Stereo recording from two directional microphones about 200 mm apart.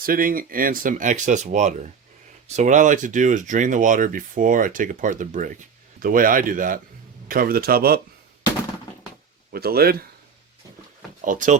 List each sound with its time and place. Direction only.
0.0 s a man's voice: 45° right (ahead or behind)
9.5 s a man's voice: 50° right (ahead or behind)
11.2 s speech: 40° right (ahead or behind)